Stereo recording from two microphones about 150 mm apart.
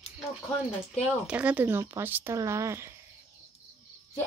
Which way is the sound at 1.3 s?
10° right (ahead or behind).